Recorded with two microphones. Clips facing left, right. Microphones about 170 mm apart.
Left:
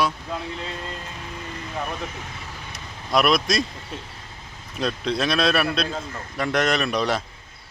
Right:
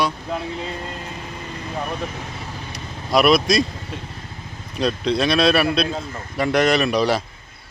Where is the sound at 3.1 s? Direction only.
5° right (ahead or behind).